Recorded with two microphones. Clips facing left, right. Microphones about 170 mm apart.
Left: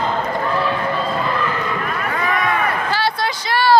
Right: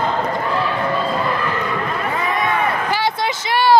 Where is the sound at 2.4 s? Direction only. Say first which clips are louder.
Right 1 dB; 20° right (ahead or behind).